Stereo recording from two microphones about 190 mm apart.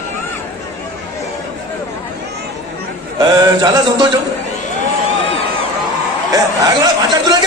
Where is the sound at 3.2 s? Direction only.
20° right (ahead or behind).